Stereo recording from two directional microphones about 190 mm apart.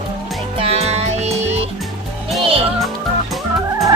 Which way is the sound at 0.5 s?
30° right (ahead or behind).